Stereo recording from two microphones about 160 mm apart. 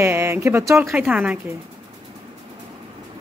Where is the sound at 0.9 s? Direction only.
5° right (ahead or behind).